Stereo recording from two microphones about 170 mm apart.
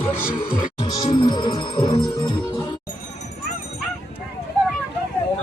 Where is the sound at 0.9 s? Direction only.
25° left (ahead or behind).